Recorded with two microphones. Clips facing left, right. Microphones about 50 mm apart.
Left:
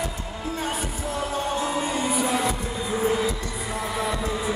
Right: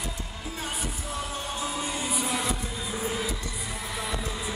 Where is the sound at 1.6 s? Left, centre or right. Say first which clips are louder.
Left 6 dB; left.